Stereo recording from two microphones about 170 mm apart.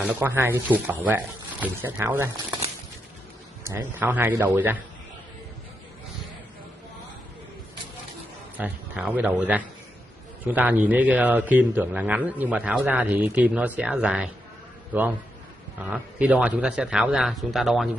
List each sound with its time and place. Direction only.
0.0 s a man's voice: 10° right (ahead or behind)
3.6 s a man's voice: 10° right (ahead or behind)
8.5 s a man's voice: 10° right (ahead or behind)
15.8 s speech: 10° right (ahead or behind)